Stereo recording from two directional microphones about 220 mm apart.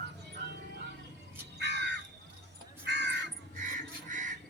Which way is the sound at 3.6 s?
35° right (ahead or behind).